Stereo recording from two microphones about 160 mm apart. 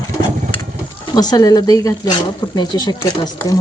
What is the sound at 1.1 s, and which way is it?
Speech, 25° left (ahead or behind).